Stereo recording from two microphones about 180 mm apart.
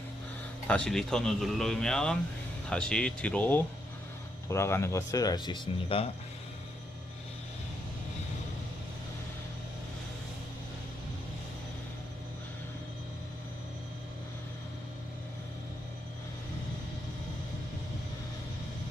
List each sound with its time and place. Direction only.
0.7 s a man's voice: 5° left (ahead or behind); by 6.1 s 30° left (ahead or behind)